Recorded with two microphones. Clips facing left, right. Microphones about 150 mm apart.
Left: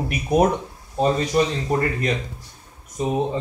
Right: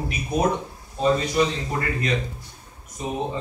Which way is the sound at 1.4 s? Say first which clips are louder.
Left 4 dB; 40° left (ahead or behind).